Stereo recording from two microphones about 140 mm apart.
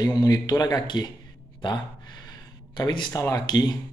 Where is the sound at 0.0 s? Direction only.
30° left (ahead or behind).